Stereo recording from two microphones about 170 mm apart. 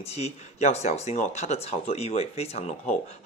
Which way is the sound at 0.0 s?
40° left (ahead or behind).